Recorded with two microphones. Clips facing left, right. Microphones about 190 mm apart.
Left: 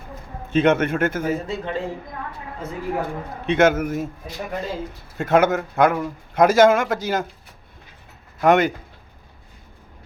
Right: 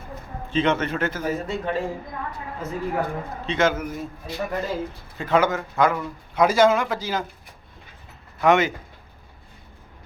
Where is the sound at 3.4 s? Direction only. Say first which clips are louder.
Left 5 dB; 55° left (ahead or behind).